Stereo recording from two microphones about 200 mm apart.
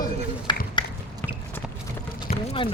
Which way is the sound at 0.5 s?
25° left (ahead or behind).